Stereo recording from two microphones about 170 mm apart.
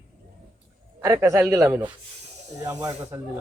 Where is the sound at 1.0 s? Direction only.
20° right (ahead or behind).